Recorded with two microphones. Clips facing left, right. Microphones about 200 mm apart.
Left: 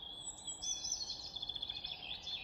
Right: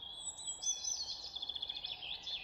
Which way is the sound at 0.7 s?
50° left (ahead or behind).